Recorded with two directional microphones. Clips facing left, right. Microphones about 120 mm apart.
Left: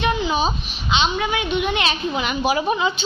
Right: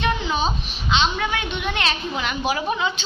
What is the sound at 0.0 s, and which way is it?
A woman's voice, 10° left (ahead or behind).